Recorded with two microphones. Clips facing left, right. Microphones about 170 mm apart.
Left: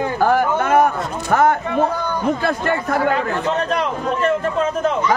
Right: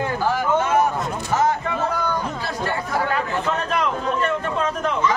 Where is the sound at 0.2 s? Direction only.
55° left (ahead or behind).